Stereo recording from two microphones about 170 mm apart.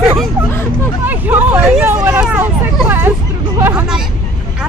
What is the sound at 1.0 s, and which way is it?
Hubbub, 10° right (ahead or behind).